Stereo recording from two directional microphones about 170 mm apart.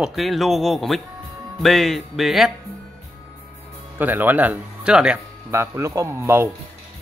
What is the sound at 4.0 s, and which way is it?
Speech, 10° right (ahead or behind).